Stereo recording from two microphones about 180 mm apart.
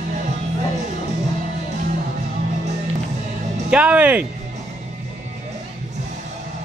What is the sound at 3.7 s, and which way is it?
Speech, 5° right (ahead or behind).